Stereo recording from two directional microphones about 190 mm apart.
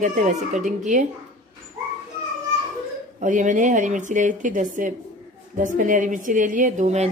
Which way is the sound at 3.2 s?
40° right (ahead or behind).